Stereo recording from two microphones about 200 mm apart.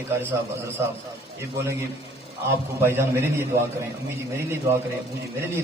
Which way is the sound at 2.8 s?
10° right (ahead or behind).